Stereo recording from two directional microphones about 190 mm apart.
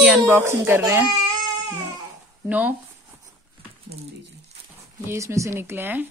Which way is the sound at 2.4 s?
10° right (ahead or behind).